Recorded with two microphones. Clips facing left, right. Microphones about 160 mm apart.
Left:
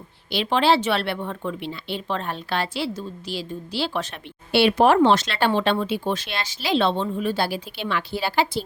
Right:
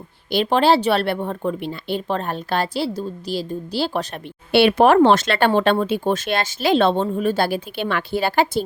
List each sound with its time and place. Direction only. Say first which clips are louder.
0.3 s speech: right 4 dB; 45° right (ahead or behind)
4.5 s speech: right 3 dB; 60° right (ahead or behind)